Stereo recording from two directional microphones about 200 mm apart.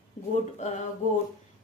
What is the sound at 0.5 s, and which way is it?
Speech, 35° left (ahead or behind).